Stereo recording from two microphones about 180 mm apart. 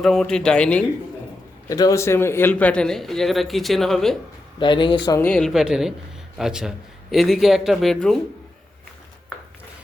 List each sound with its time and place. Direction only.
0.0 s a man's voice: centre (ahead or behind)
1.6 s a man's voice: 20° left (ahead or behind); by 4.2 s centre (ahead or behind)
4.6 s speech: 25° left (ahead or behind)
5.2 s a man's voice: 5° left (ahead or behind)